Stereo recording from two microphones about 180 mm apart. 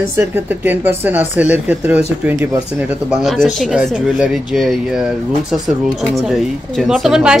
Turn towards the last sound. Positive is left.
turn(degrees=0)  # may be behind; listen again after turning